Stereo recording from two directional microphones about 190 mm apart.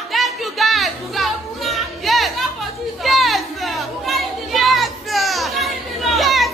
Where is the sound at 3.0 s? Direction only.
Centre (ahead or behind).